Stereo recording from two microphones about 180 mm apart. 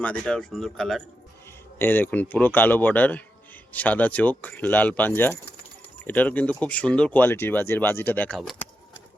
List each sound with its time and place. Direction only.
0.0 s speech: 5° left (ahead or behind)